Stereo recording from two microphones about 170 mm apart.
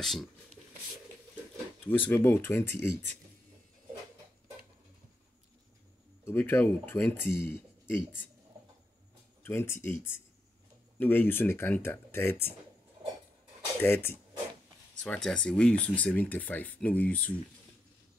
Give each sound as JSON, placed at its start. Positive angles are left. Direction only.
{"t": 0.0, "sound": "speech", "side_deg": 0}
{"t": 1.9, "sound": "speech", "side_deg": 10}
{"t": 6.2, "sound": "speech", "side_deg": 15}
{"t": 7.4, "sound": "a sound", "side_deg": 65}
{"t": 9.4, "sound": "speech", "side_deg": 15}
{"t": 13.7, "sound": "speech", "side_deg": 15}